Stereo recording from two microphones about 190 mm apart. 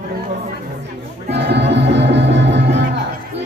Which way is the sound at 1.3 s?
65° right (ahead or behind).